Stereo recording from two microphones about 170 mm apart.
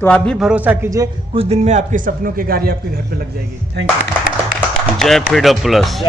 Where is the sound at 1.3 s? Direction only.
35° right (ahead or behind); by 3.2 s 65° right (ahead or behind).